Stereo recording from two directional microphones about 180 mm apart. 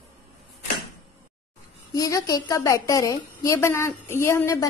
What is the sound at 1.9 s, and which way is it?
A woman's voice, 20° left (ahead or behind).